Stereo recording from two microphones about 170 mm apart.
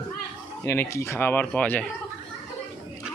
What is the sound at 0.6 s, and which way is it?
Speech, 15° left (ahead or behind).